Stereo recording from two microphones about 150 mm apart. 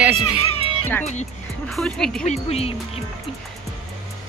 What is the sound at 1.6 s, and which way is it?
Speech, 5° left (ahead or behind).